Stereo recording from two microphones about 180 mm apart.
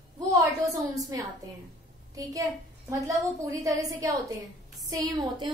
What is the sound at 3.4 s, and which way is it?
A woman's voice, 20° right (ahead or behind).